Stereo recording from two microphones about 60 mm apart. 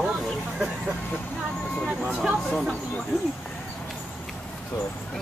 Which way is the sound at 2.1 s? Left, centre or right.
Centre.